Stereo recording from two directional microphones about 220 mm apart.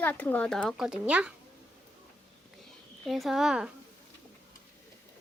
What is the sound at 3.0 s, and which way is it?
Speech, centre (ahead or behind).